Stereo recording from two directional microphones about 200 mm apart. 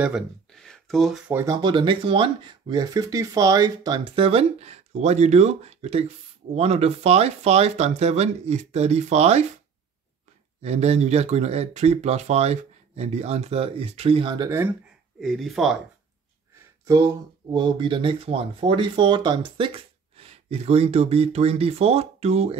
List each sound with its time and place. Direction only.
0.0 s speech: centre (ahead or behind); by 9.5 s 30° right (ahead or behind)
10.6 s speech: 35° right (ahead or behind); by 14.7 s 15° right (ahead or behind)
15.1 s speech: centre (ahead or behind)
16.8 s speech: 15° right (ahead or behind)